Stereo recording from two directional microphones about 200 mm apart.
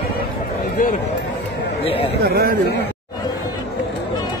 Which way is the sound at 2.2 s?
50° right (ahead or behind).